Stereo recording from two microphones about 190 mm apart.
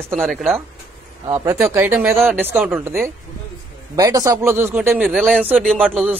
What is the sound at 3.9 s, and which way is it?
A man's voice, 20° right (ahead or behind).